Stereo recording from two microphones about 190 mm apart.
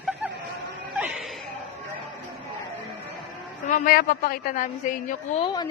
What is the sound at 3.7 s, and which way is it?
A woman's voice, 50° left (ahead or behind).